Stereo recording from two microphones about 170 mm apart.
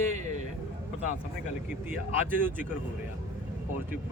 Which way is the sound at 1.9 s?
10° right (ahead or behind).